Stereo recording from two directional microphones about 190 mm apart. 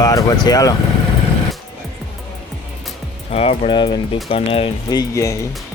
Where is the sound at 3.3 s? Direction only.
30° left (ahead or behind).